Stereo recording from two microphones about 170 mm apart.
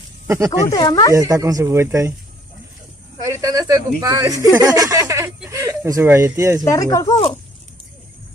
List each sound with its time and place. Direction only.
0.5 s speech: 20° left (ahead or behind)
1.1 s speech: 20° right (ahead or behind)
3.3 s speech: 20° right (ahead or behind)
5.5 s a sound: 15° right (ahead or behind)
5.9 s speech: 15° right (ahead or behind)
6.6 s speech: 20° left (ahead or behind)